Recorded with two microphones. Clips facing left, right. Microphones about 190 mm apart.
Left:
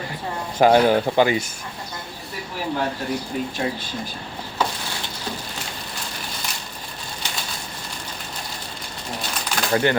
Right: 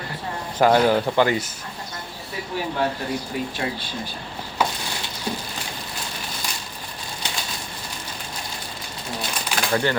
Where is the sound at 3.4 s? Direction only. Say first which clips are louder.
Left 1 dB; 45° left (ahead or behind).